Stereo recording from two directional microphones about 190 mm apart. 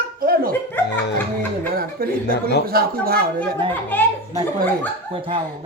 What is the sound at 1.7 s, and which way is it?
Chuckle, 50° right (ahead or behind).